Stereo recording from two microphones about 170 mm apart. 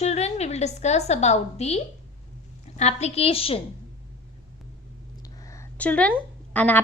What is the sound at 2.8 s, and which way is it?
Speech, 40° left (ahead or behind).